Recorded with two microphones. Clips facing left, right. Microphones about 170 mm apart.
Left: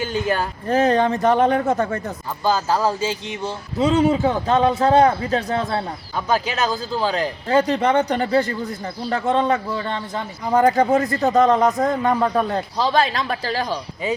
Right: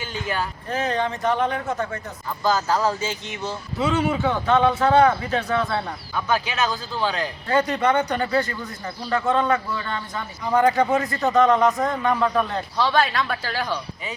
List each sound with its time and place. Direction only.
0.0 s speech: 45° left (ahead or behind)
2.4 s speech: 30° left (ahead or behind)